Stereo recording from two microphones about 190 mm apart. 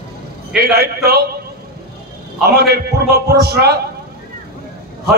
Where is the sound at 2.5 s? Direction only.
55° right (ahead or behind).